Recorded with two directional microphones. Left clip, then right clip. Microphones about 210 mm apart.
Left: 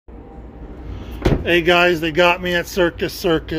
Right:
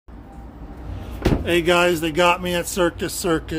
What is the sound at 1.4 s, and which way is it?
Speech, 5° right (ahead or behind).